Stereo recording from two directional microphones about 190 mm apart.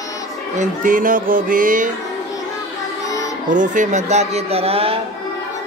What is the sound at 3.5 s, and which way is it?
Speech, 40° right (ahead or behind).